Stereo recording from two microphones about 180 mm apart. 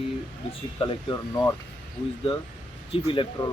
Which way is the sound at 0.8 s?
35° left (ahead or behind).